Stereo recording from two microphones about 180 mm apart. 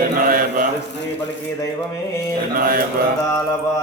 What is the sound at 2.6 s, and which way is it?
Mantra, 50° right (ahead or behind).